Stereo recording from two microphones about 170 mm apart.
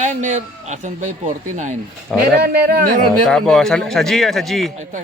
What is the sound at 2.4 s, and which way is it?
Speech, 65° right (ahead or behind).